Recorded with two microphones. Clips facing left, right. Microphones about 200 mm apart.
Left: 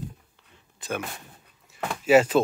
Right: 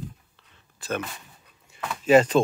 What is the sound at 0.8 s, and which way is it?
Speech, 15° left (ahead or behind).